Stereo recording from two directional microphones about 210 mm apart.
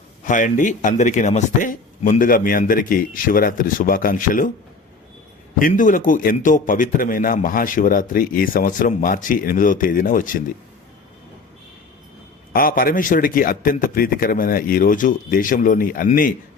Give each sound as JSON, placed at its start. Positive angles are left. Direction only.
{"t": 0.3, "sound": "a man's voice", "side_deg": 40}
{"t": 5.5, "sound": "a man's voice", "side_deg": 40}
{"t": 12.5, "sound": "a man's voice", "side_deg": 45}